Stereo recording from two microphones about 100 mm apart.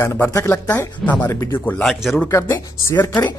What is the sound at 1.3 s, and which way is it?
Speech, 30° left (ahead or behind).